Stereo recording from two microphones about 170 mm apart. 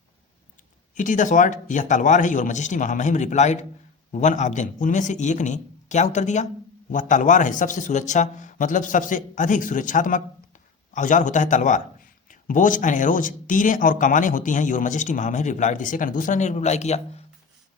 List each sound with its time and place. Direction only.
0.9 s a man's voice: 50° left (ahead or behind)